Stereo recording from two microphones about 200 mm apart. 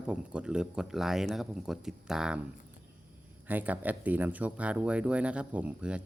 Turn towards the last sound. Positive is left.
turn(degrees=-5)  # may be behind; listen again after turning